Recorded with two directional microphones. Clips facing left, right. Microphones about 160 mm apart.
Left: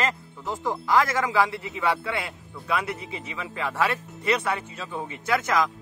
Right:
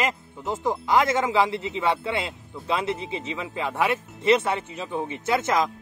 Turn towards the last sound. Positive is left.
turn(degrees=-25)  # may be behind; listen again after turning